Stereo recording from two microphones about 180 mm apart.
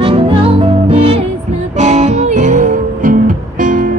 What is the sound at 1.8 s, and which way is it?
Music, 40° right (ahead or behind).